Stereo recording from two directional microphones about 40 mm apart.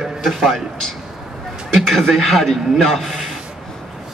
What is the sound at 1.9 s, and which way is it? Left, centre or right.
A man's voice, centre.